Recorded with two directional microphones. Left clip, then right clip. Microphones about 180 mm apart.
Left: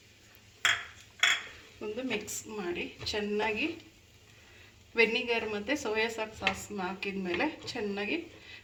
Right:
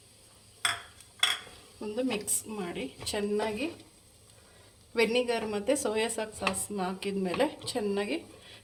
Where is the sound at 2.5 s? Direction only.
70° right (ahead or behind).